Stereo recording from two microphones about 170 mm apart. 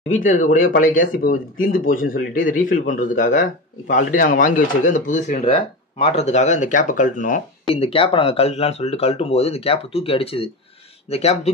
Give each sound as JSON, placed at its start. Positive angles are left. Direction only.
{"t": 0.1, "sound": "speech", "side_deg": 50}
{"t": 7.7, "sound": "speech", "side_deg": 35}